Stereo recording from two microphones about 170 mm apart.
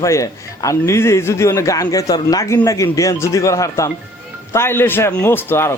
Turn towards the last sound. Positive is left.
turn(degrees=15)  # may be behind; listen again after turning